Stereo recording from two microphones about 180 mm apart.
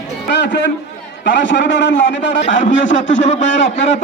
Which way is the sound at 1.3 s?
80° left.